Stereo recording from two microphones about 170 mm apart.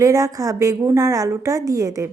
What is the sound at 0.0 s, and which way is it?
A woman's voice, 20° right (ahead or behind).